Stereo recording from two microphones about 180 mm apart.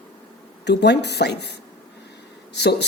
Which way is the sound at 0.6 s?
70° left (ahead or behind).